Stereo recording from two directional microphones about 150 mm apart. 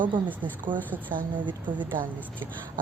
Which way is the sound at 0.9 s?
10° right (ahead or behind).